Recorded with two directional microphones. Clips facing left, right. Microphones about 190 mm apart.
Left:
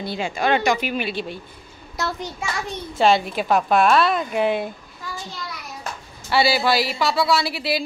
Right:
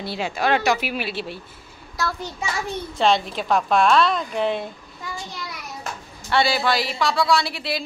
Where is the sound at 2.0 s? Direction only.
20° left (ahead or behind).